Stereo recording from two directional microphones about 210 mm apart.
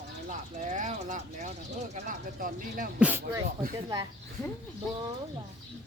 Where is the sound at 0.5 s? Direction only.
35° right (ahead or behind).